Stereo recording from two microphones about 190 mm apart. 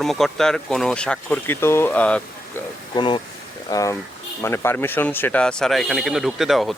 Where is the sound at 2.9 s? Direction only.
25° left (ahead or behind).